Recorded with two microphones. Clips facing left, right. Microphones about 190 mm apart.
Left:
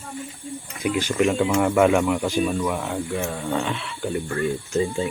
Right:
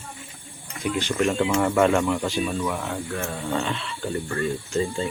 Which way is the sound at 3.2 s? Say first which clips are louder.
Left 2 dB; centre (ahead or behind).